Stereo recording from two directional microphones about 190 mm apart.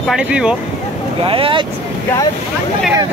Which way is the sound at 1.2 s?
30° right (ahead or behind).